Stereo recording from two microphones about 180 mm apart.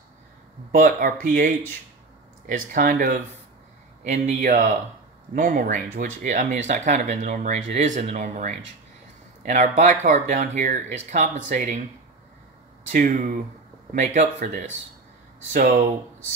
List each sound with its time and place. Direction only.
0.7 s speech: 50° right (ahead or behind)
12.9 s speech: 50° right (ahead or behind)
15.5 s speech: 55° right (ahead or behind)